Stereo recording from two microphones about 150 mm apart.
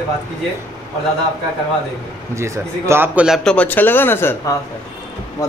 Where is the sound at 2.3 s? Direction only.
20° right (ahead or behind).